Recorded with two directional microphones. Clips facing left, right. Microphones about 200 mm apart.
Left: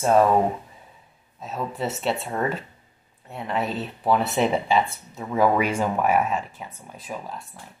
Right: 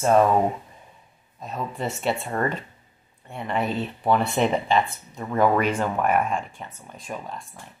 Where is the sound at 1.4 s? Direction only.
5° left (ahead or behind).